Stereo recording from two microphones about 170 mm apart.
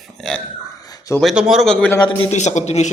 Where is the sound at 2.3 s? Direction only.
40° left (ahead or behind).